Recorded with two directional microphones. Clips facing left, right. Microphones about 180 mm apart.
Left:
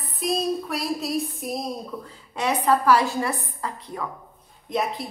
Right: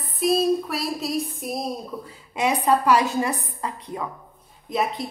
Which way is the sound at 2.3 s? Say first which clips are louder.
Right 1 dB; 15° right (ahead or behind).